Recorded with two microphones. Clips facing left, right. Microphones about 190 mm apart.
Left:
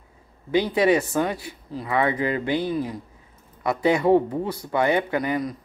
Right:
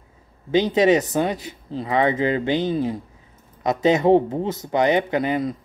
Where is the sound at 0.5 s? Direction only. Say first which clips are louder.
Right 3 dB; 20° right (ahead or behind).